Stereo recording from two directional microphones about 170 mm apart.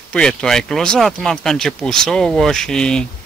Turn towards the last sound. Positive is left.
turn(degrees=5)  # may be behind; listen again after turning